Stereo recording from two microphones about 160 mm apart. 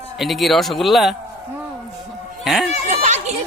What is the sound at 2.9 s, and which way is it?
Speech, 50° right (ahead or behind).